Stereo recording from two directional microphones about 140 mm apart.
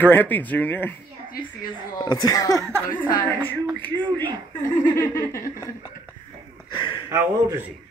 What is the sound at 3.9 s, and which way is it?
Speech, 35° right (ahead or behind).